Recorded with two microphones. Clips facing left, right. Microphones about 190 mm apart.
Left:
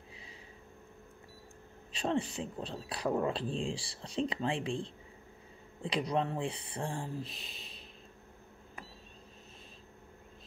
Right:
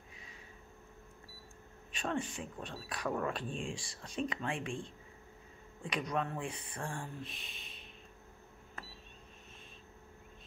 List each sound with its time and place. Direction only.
2.0 s speech: 35° left (ahead or behind)
2.5 s speech: 20° left (ahead or behind)